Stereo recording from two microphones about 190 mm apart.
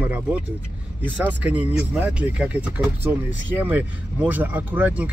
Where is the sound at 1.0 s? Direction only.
10° right (ahead or behind).